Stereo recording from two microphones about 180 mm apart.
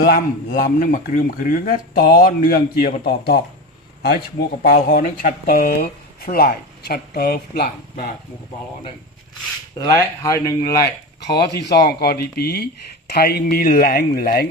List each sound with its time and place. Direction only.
0.0 s speech: 55° left (ahead or behind)
4.6 s speech: 55° left (ahead or behind)
9.7 s speech: 15° left (ahead or behind)
11.3 s speech: 65° left (ahead or behind)